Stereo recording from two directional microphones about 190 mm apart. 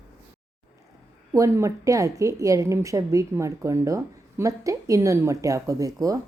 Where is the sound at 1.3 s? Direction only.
15° right (ahead or behind).